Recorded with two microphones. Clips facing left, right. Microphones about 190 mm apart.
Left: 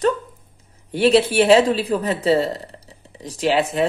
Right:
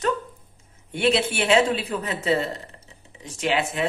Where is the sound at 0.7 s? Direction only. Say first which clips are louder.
Left 6 dB; 35° left (ahead or behind).